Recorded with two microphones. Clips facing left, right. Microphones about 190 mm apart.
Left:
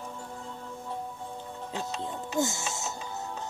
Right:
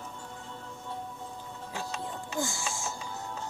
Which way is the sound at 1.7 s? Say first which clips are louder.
Left 2 dB; 20° left (ahead or behind).